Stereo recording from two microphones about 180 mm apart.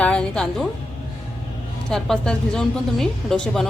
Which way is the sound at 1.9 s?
5° left (ahead or behind).